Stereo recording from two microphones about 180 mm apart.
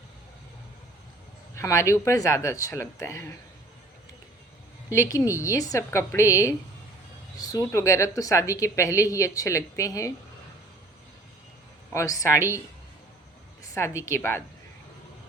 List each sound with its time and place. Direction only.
1.5 s a woman's voice: 15° left (ahead or behind)
4.9 s a woman's voice: 20° left (ahead or behind)
11.9 s a woman's voice: 15° left (ahead or behind)
13.7 s a woman's voice: 15° left (ahead or behind)